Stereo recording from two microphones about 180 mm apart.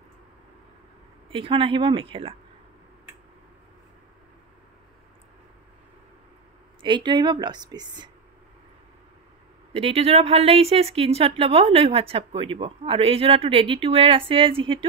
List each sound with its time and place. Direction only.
1.3 s a woman's voice: 30° right (ahead or behind)
6.8 s a woman's voice: 25° right (ahead or behind)
9.8 s speech: 35° right (ahead or behind)